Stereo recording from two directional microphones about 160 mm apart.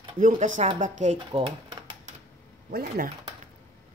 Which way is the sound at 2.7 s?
70° right (ahead or behind).